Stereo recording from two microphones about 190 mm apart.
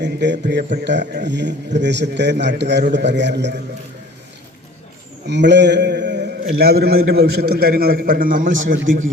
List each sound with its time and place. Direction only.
0.0 s a man's voice: 65° right (ahead or behind)
5.2 s a man's voice: 65° right (ahead or behind); by 8.7 s 45° right (ahead or behind)